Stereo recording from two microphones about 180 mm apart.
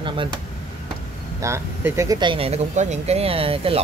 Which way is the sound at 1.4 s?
15° right (ahead or behind).